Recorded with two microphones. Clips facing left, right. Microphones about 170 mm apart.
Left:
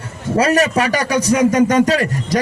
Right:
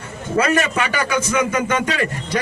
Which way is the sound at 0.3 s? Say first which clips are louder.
Left 4 dB; 35° left (ahead or behind).